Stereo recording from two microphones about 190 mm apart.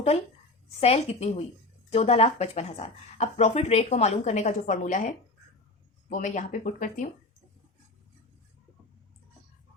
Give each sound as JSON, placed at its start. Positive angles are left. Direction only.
{"t": 0.8, "sound": "speech", "side_deg": 30}